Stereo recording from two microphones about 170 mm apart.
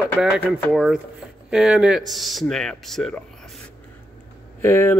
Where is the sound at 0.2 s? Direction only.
5° right (ahead or behind).